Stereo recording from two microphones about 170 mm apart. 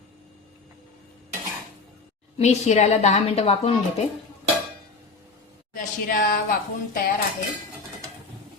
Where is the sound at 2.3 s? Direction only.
40° left (ahead or behind).